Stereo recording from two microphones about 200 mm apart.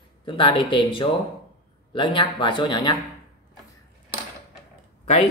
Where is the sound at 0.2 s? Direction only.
25° left (ahead or behind).